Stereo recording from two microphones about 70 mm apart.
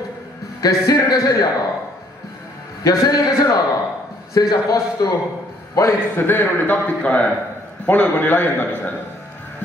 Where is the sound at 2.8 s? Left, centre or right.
Left.